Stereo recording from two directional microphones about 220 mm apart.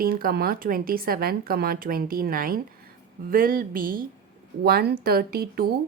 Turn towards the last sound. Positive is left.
turn(degrees=-45)  # may be behind; listen again after turning